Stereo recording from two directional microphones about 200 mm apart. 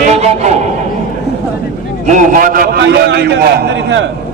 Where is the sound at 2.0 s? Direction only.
40° right (ahead or behind).